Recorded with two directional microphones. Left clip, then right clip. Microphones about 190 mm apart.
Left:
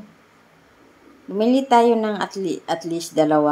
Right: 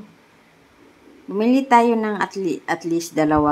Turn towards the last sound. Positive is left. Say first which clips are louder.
# left 1 dB
turn(degrees=-10)  # may be behind; listen again after turning